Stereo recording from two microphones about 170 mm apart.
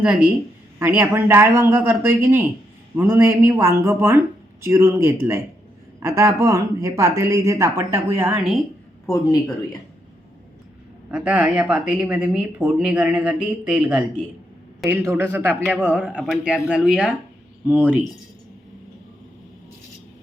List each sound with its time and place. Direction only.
0.0 s speech: 5° right (ahead or behind)
11.1 s speech: 10° right (ahead or behind)